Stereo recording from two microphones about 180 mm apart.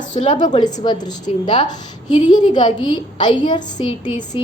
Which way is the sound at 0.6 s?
25° left (ahead or behind).